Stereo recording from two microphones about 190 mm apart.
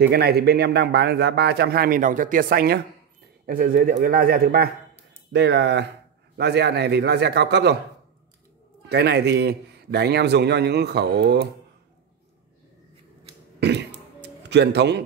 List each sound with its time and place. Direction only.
0.0 s a man's voice: 60° right (ahead or behind)
5.3 s a man's voice: 65° right (ahead or behind)
8.8 s a man's voice: 60° right (ahead or behind)
13.6 s a sound: 65° right (ahead or behind)
14.2 s a man's voice: 65° right (ahead or behind)